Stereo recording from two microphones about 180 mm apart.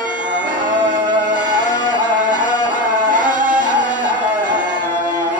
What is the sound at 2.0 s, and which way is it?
Music, 45° right (ahead or behind).